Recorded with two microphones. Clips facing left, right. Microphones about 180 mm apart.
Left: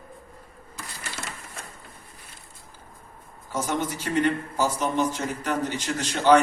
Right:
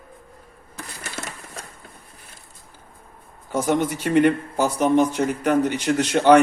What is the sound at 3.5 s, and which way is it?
Speech, 60° right (ahead or behind).